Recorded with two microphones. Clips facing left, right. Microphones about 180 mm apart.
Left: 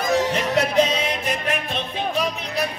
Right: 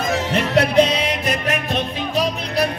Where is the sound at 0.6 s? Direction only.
70° right (ahead or behind).